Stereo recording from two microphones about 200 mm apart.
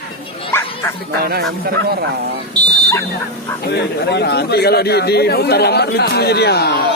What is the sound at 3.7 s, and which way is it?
Speech, 55° left (ahead or behind).